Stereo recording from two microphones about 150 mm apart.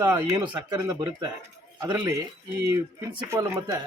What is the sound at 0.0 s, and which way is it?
Speech, 20° right (ahead or behind).